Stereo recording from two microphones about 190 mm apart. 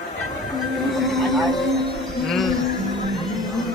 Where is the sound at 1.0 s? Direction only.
Centre (ahead or behind).